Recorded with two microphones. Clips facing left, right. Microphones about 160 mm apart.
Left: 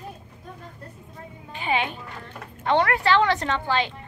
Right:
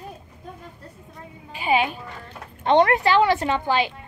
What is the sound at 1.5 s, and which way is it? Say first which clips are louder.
Speech: right 4 dB; 10° right (ahead or behind).